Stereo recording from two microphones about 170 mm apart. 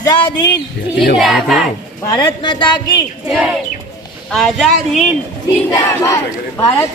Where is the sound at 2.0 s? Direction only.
20° left (ahead or behind).